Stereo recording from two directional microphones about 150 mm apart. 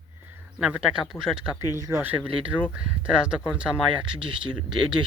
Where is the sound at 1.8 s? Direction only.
15° right (ahead or behind).